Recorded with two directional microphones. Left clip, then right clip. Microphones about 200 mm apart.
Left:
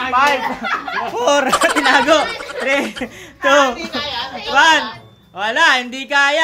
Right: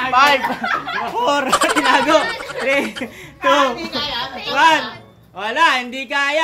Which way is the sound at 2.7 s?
25° left (ahead or behind).